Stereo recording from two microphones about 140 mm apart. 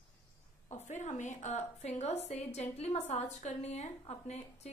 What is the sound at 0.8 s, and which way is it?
A woman's voice, 55° left (ahead or behind).